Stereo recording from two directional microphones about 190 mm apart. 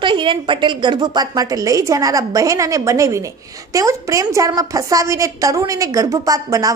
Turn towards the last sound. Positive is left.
turn(degrees=-20)  # may be behind; listen again after turning